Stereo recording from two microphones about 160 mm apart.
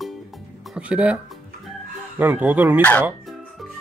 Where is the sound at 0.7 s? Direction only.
10° right (ahead or behind).